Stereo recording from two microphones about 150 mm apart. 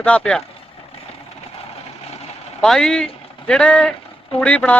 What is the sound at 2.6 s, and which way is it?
Speech, 5° left (ahead or behind).